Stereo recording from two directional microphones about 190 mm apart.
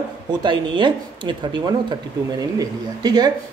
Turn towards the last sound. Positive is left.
turn(degrees=-20)  # may be behind; listen again after turning